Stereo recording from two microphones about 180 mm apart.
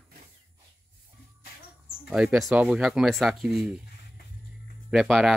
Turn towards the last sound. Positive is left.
turn(degrees=0)  # may be behind; listen again after turning